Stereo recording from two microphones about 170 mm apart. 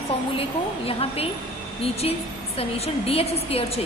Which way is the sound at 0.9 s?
35° left (ahead or behind).